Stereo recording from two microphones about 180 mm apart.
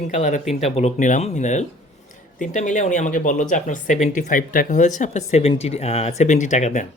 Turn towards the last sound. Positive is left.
turn(degrees=40)  # may be behind; listen again after turning